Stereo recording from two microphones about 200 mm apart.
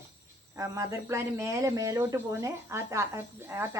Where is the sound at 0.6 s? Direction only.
15° right (ahead or behind).